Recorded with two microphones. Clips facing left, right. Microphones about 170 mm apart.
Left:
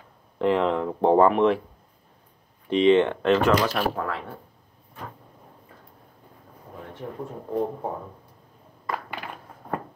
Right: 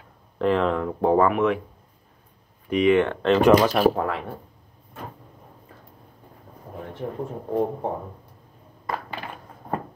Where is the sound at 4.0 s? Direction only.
15° right (ahead or behind).